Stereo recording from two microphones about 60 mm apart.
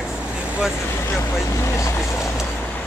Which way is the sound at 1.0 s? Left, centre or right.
Left.